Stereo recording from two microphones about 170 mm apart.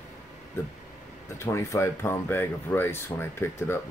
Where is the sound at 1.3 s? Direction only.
15° left (ahead or behind).